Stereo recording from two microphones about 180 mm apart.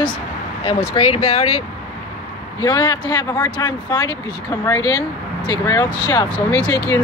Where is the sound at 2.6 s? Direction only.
20° left (ahead or behind).